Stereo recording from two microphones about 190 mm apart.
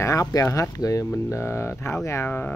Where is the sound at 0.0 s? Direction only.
15° left (ahead or behind).